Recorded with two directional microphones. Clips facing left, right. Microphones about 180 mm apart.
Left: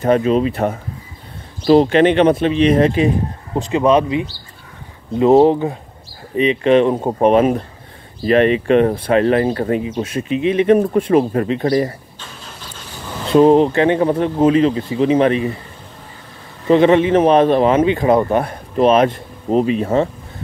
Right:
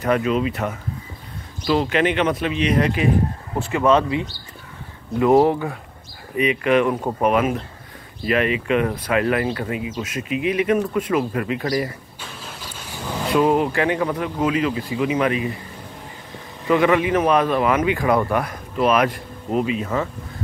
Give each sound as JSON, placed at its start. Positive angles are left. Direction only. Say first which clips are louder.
{"t": 0.0, "sound": "a man's voice", "louder": "left 5 dB", "side_deg": 30}
{"t": 13.3, "sound": "a man's voice", "louder": "left 8 dB", "side_deg": 30}
{"t": 16.6, "sound": "a man's voice", "louder": "left 6 dB", "side_deg": 30}
{"t": 19.6, "sound": "speech", "louder": "left 6 dB", "side_deg": 40}